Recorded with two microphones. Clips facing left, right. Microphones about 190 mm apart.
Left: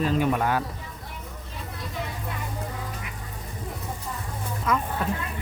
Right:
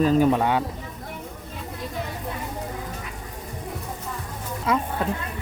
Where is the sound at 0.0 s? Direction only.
40° right (ahead or behind).